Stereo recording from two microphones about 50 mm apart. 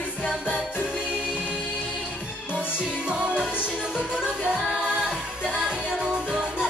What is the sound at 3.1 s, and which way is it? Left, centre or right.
Music, centre.